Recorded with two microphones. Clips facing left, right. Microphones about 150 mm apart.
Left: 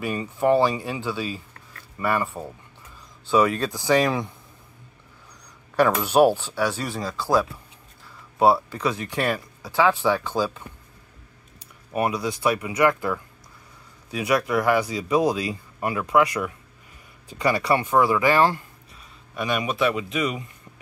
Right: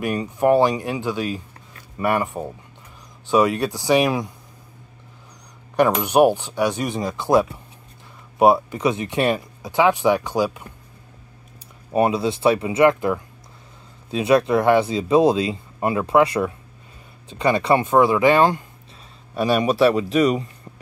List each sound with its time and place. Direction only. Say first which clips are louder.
0.0 s speech: right 3 dB; 15° right (ahead or behind)
5.8 s speech: right 2 dB; 15° right (ahead or behind)
11.9 s speech: right 6 dB; 25° right (ahead or behind)
19.3 s speech: right 7 dB; 35° right (ahead or behind)